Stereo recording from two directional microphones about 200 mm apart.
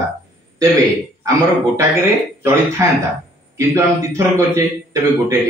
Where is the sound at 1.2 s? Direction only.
15° right (ahead or behind).